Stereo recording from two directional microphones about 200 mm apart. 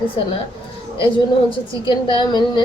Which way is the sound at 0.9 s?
25° left (ahead or behind).